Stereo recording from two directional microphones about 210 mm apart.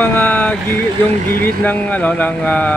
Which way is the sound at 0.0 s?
10° left (ahead or behind).